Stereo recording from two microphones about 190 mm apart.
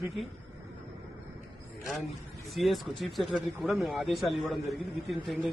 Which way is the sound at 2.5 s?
Centre (ahead or behind).